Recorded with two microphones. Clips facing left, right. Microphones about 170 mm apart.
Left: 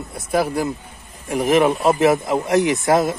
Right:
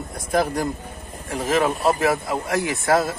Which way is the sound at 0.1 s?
5° left (ahead or behind).